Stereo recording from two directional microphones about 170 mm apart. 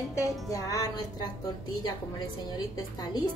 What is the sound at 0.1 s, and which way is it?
Speech, 20° left (ahead or behind).